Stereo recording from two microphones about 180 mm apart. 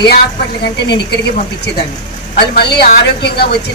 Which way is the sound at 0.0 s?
65° left (ahead or behind).